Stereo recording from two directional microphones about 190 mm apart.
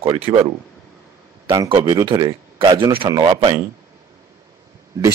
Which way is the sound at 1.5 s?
25° right (ahead or behind).